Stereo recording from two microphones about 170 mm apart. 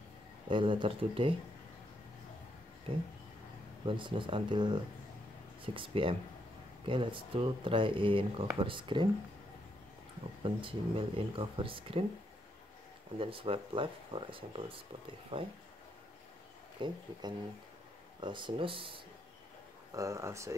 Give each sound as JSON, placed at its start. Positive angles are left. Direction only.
{"t": 0.5, "sound": "speech", "side_deg": -30}
{"t": 3.8, "sound": "speech", "side_deg": -30}
{"t": 5.8, "sound": "speech", "side_deg": -30}
{"t": 10.4, "sound": "speech", "side_deg": -30}
{"t": 13.2, "sound": "speech", "side_deg": -30}
{"t": 16.8, "sound": "speech", "side_deg": -30}
{"t": 18.2, "sound": "speech", "side_deg": -30}
{"t": 19.9, "sound": "speech", "side_deg": -20}